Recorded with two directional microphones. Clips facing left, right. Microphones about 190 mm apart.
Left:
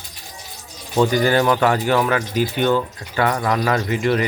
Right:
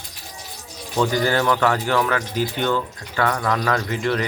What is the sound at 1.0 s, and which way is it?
Speech, 15° left (ahead or behind).